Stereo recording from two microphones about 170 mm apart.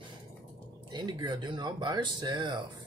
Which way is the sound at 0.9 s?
25° right (ahead or behind).